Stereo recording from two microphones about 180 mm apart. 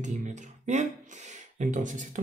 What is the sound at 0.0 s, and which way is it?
Speech, 40° right (ahead or behind).